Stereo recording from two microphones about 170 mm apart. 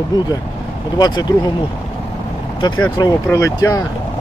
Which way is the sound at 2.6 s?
25° left (ahead or behind).